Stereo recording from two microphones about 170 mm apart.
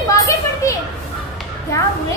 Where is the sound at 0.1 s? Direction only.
20° left (ahead or behind).